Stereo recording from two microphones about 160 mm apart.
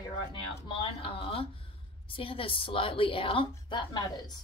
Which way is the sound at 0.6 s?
35° left (ahead or behind).